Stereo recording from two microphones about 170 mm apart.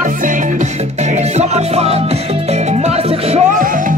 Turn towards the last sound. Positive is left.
turn(degrees=-40)  # may be behind; listen again after turning